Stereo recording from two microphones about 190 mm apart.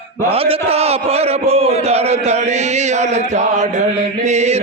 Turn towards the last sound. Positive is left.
turn(degrees=-35)  # may be behind; listen again after turning